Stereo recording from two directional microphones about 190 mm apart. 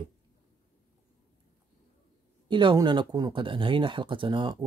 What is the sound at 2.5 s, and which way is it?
Speech, 25° right (ahead or behind).